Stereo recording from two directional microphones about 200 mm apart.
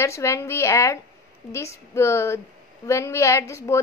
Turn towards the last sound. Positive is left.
turn(degrees=15)  # may be behind; listen again after turning